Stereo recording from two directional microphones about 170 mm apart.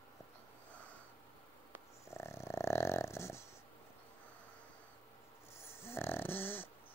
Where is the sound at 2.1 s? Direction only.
15° left (ahead or behind).